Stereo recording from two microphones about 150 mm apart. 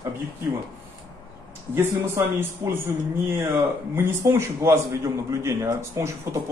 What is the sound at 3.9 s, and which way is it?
A man's voice, 15° right (ahead or behind).